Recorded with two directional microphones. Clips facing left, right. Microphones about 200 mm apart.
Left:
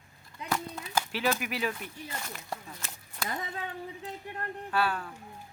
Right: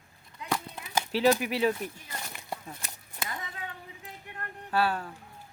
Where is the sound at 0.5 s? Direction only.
20° right (ahead or behind).